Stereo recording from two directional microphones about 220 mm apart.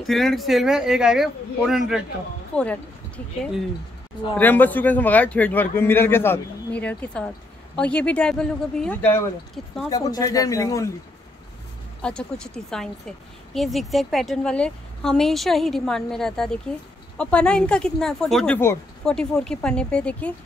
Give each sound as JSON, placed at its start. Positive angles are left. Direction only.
{"t": 0.0, "sound": "speech", "side_deg": 0}
{"t": 4.4, "sound": "a man's voice", "side_deg": 10}
{"t": 12.0, "sound": "speech", "side_deg": 5}